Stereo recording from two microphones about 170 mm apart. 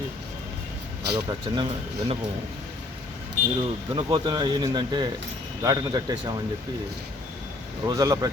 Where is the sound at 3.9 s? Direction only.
25° right (ahead or behind).